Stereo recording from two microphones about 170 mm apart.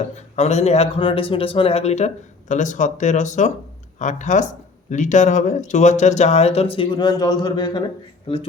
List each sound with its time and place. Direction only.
0.0 s speech: 40° left (ahead or behind); by 7.9 s 25° left (ahead or behind)